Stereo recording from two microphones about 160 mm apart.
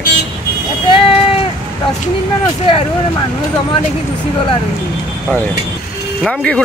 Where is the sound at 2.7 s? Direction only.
30° left (ahead or behind).